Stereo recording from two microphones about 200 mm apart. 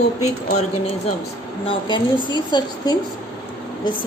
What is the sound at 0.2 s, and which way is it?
Speech, 35° left (ahead or behind).